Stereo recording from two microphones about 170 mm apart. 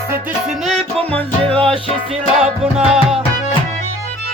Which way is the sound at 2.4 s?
5° right (ahead or behind).